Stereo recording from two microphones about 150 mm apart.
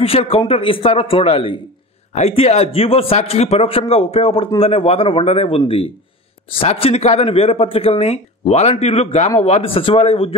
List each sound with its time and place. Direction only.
0.0 s a man's voice: 40° left (ahead or behind)